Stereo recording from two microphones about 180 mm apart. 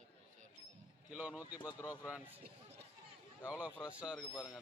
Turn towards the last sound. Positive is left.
turn(degrees=-5)  # may be behind; listen again after turning